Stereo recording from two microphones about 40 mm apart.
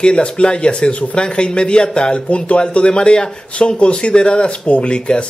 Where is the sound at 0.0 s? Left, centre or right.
Left.